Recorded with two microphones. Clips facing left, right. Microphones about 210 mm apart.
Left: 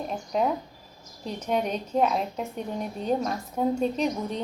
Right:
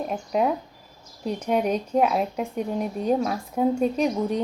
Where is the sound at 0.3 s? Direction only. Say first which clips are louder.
Right 2 dB; 5° right (ahead or behind).